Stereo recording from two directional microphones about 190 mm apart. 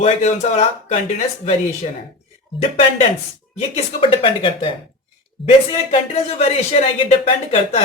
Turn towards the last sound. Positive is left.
turn(degrees=35)  # may be behind; listen again after turning